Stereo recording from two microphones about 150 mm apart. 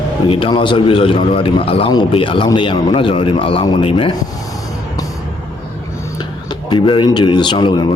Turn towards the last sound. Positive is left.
turn(degrees=30)  # may be behind; listen again after turning